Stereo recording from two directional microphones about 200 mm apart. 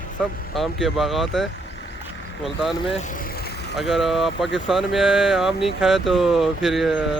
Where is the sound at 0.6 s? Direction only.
Centre (ahead or behind).